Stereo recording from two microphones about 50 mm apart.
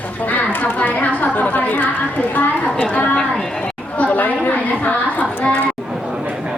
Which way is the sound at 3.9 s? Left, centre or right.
Left.